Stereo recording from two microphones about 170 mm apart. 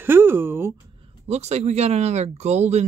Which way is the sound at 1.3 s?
40° right (ahead or behind).